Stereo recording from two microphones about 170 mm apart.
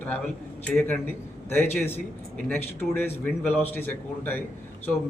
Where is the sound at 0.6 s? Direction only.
10° left (ahead or behind).